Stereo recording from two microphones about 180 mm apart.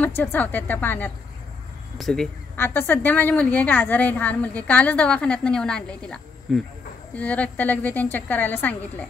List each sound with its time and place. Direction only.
0.0 s a woman's voice: 10° left (ahead or behind)
2.5 s a woman's voice: 10° left (ahead or behind)